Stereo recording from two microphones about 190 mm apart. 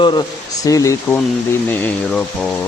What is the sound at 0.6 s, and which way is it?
Speech, 15° left (ahead or behind).